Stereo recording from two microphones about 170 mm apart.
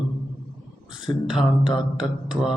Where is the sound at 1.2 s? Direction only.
5° right (ahead or behind).